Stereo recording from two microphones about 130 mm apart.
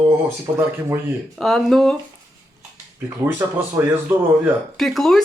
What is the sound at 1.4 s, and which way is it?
Speech, 5° left (ahead or behind).